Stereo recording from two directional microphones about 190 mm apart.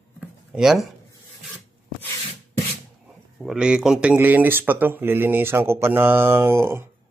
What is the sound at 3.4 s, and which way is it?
Speech, 5° right (ahead or behind).